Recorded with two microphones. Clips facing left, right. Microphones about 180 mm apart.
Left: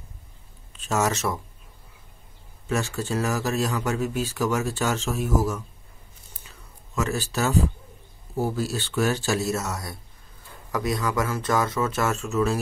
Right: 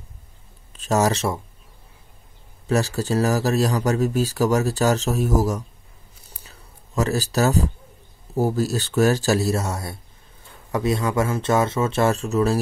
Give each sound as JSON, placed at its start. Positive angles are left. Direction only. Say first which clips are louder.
{"t": 0.7, "sound": "speech", "louder": "right 5 dB", "side_deg": -35}
{"t": 2.6, "sound": "speech", "louder": "right 5 dB", "side_deg": -35}
{"t": 6.4, "sound": "a sound", "louder": "right 1 dB", "side_deg": -35}
{"t": 8.4, "sound": "speech", "louder": "right 5 dB", "side_deg": -40}